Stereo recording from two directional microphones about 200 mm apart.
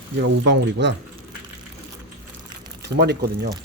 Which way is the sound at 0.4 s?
60° right (ahead or behind).